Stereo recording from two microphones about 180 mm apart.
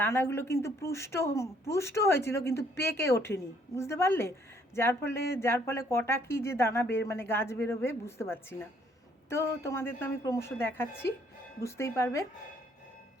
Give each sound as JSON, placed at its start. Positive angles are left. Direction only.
{"t": 0.0, "sound": "speech", "side_deg": 15}